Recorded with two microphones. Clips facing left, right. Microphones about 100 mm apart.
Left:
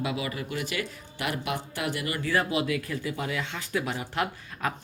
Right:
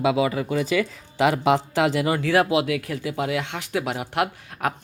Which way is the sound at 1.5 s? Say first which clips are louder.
Right 11 dB; 90° right.